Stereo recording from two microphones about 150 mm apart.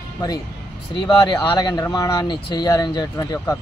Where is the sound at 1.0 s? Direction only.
30° left (ahead or behind).